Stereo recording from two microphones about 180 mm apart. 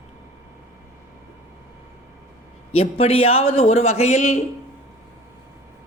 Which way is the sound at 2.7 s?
30° left (ahead or behind).